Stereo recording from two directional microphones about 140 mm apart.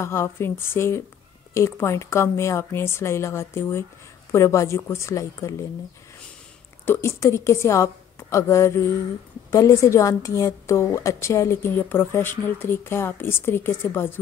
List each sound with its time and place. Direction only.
0.0 s a woman's voice: 20° left (ahead or behind)
6.9 s a woman's voice: 20° left (ahead or behind)